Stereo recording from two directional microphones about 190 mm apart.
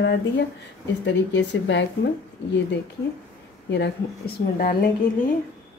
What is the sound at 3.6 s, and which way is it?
Speech, 65° left (ahead or behind).